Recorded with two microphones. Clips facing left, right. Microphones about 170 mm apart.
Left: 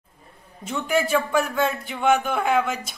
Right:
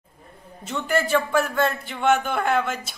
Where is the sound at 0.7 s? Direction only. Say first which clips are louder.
Left 1 dB; centre (ahead or behind).